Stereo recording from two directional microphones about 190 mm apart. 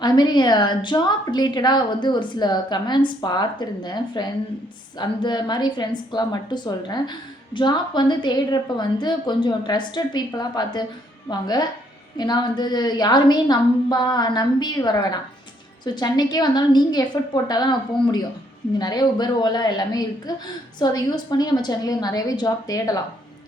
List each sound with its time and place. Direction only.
0.0 s a woman's voice: 25° left (ahead or behind)